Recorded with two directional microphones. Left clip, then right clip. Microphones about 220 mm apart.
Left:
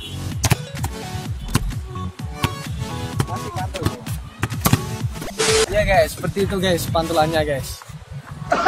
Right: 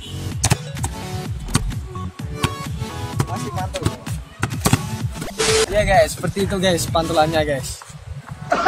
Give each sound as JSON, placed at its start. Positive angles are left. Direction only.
{"t": 0.3, "sound": "music", "side_deg": 0}
{"t": 2.3, "sound": "music", "side_deg": 0}
{"t": 5.2, "sound": "speech", "side_deg": 0}
{"t": 8.5, "sound": "music", "side_deg": 0}